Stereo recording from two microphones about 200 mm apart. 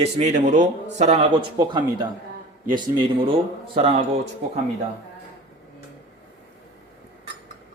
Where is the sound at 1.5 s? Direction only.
20° right (ahead or behind).